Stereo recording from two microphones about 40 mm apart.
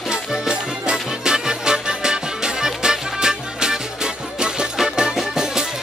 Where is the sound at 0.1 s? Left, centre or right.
Centre.